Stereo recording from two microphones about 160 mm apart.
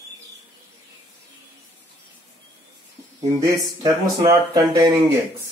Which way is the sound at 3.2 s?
20° right (ahead or behind).